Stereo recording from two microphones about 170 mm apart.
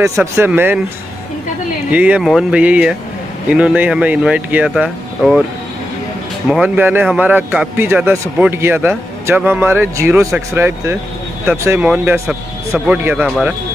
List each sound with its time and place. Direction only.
0.2 s speech: 15° right (ahead or behind)
1.9 s speech: 10° right (ahead or behind)
6.5 s speech: 10° right (ahead or behind)